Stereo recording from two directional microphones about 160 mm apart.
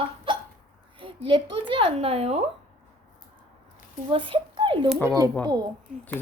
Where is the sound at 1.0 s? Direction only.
30° right (ahead or behind).